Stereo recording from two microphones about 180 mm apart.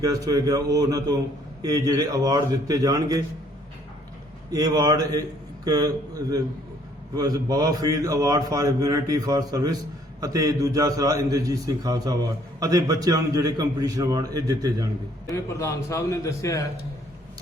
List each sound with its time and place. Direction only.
0.0 s a man's voice: 20° right (ahead or behind)
4.5 s a man's voice: 20° right (ahead or behind)
15.5 s a man's voice: 15° left (ahead or behind)